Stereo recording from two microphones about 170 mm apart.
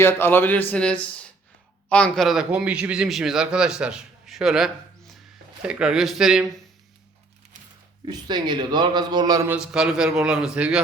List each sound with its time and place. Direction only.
0.0 s a man's voice: 15° left (ahead or behind); by 6.5 s 5° right (ahead or behind)
8.0 s a man's voice: 25° right (ahead or behind)
9.5 s a man's voice: 5° right (ahead or behind)